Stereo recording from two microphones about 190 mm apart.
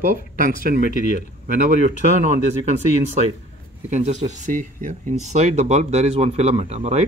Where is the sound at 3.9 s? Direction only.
35° right (ahead or behind).